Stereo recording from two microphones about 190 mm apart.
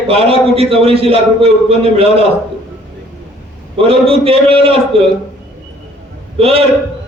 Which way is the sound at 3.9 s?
30° right (ahead or behind).